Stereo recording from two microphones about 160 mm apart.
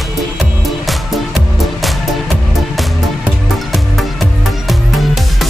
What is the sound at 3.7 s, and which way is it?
Music, centre (ahead or behind).